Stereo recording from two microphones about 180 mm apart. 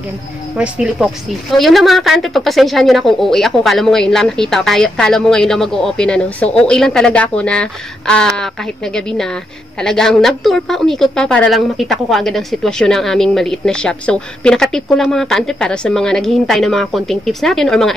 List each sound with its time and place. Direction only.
0.6 s a woman's voice: 5° right (ahead or behind)